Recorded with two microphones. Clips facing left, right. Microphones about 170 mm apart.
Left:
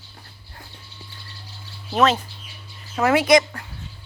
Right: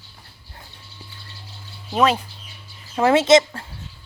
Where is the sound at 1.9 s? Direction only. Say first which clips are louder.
Even; 15° right (ahead or behind).